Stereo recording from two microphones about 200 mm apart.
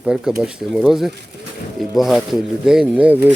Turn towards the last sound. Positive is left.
turn(degrees=-10)  # may be behind; listen again after turning